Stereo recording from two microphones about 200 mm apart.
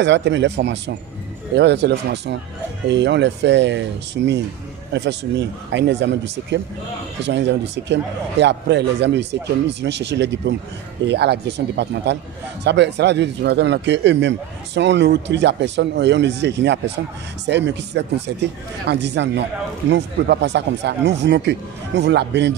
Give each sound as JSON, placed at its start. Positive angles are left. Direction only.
{"t": 0.0, "sound": "speech", "side_deg": -60}